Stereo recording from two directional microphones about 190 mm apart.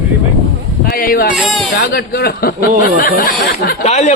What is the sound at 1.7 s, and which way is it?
Speech, 60° left (ahead or behind).